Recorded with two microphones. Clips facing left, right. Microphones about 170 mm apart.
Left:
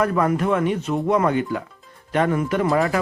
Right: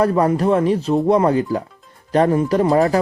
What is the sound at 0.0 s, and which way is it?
A man's voice, 30° right (ahead or behind).